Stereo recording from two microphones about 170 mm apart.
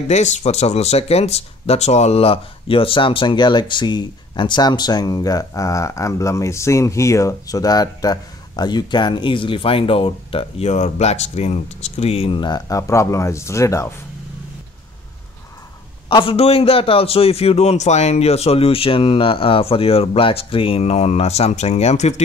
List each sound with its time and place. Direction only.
0.1 s speech: 40° left (ahead or behind); by 13.9 s 15° left (ahead or behind)
16.1 s a man's voice: 30° left (ahead or behind)